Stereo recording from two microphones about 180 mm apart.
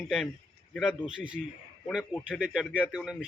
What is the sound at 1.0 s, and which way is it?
A man's voice, 5° right (ahead or behind).